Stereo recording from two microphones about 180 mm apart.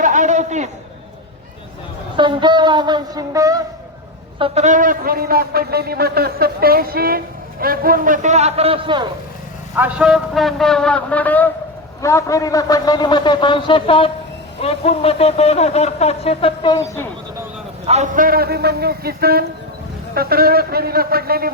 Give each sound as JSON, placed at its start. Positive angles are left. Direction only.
{"t": 0.0, "sound": "a sound", "side_deg": -45}
{"t": 2.1, "sound": "a woman's voice", "side_deg": -25}
{"t": 4.4, "sound": "a man's voice", "side_deg": -35}
{"t": 9.7, "sound": "a man's voice", "side_deg": -5}
{"t": 17.8, "sound": "a man's voice", "side_deg": -40}